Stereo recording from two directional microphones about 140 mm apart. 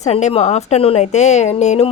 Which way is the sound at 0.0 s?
55° left (ahead or behind).